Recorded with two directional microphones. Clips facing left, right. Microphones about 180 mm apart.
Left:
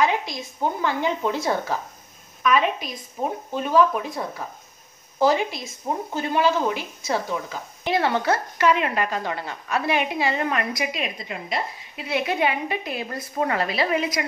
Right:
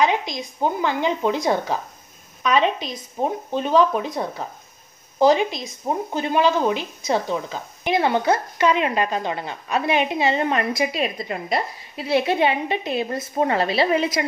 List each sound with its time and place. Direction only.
0.0 s a woman's voice: 20° right (ahead or behind)